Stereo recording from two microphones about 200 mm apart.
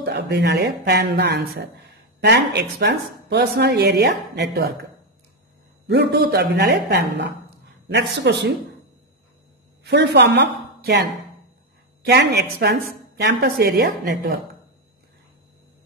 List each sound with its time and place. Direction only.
0.0 s a woman's voice: 55° right (ahead or behind)
5.9 s a woman's voice: 55° right (ahead or behind)
9.8 s a woman's voice: 55° right (ahead or behind)
12.1 s a woman's voice: 55° right (ahead or behind)